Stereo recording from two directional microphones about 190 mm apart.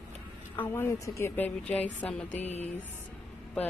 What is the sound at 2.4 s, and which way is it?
Music, 35° left (ahead or behind).